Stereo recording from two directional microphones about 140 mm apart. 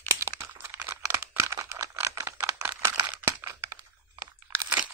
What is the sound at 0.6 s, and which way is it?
Computer keyboard, 15° right (ahead or behind).